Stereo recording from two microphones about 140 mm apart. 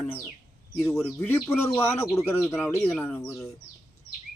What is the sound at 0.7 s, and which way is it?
A man's voice, 15° left (ahead or behind).